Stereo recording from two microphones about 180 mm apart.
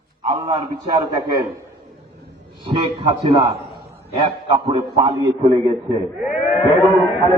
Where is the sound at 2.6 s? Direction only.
25° right (ahead or behind).